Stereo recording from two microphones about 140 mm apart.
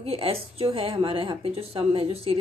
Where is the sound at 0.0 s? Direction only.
45° right (ahead or behind).